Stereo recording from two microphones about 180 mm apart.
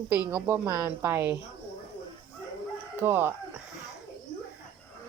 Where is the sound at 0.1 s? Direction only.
10° right (ahead or behind).